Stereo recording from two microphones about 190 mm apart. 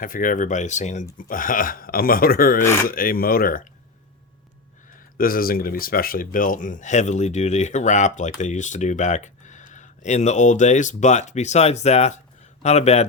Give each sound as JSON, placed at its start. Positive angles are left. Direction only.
{"t": 0.0, "sound": "speech", "side_deg": 45}
{"t": 4.9, "sound": "speech", "side_deg": 50}